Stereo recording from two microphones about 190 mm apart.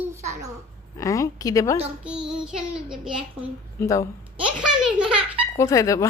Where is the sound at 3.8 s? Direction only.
15° left (ahead or behind).